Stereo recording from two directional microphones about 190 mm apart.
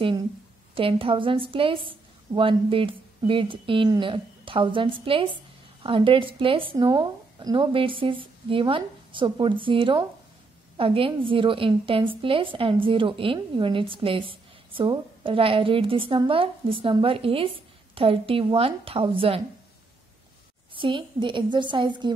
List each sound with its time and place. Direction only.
0.7 s a woman's voice: 30° right (ahead or behind)
20.7 s a woman's voice: 25° right (ahead or behind)